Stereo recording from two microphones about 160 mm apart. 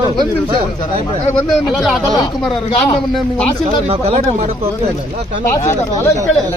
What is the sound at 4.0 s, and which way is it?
Speech, 40° right (ahead or behind).